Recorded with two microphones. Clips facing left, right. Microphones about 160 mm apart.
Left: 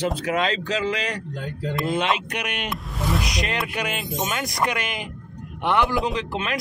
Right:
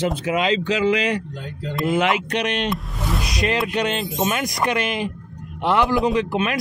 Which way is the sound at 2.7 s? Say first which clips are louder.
Right 1 dB; centre (ahead or behind).